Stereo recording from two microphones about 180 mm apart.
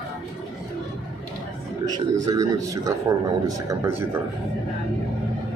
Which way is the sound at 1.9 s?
20° right (ahead or behind).